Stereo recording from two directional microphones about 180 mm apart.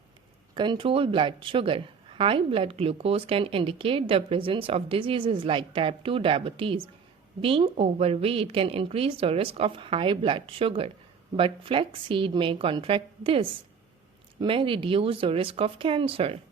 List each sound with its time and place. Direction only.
0.5 s a woman's voice: 25° right (ahead or behind)